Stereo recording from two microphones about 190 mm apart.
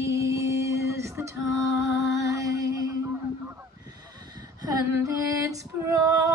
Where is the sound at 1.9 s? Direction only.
15° right (ahead or behind).